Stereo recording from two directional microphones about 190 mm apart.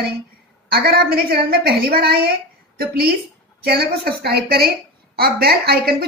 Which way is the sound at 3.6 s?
55° right (ahead or behind).